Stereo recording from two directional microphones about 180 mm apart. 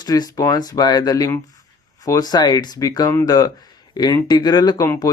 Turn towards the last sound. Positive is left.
turn(degrees=25)  # may be behind; listen again after turning